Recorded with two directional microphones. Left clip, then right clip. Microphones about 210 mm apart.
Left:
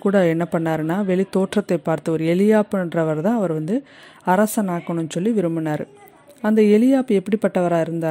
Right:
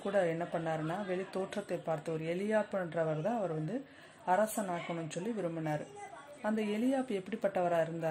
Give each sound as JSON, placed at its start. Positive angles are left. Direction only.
{"t": 0.0, "sound": "a man's voice", "side_deg": 45}